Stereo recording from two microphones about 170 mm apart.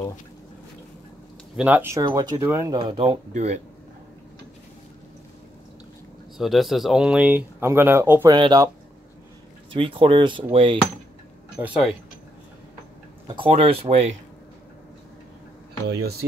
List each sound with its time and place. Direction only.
1.6 s speech: 10° right (ahead or behind)
2.0 s speech: 25° right (ahead or behind)
3.3 s speech: 40° right (ahead or behind)
6.3 s speech: centre (ahead or behind)
8.4 s speech: 25° right (ahead or behind)
9.7 s speech: 30° right (ahead or behind)
11.5 s speech: 5° right (ahead or behind)
13.4 s speech: 35° right (ahead or behind)
15.9 s speech: 65° right (ahead or behind)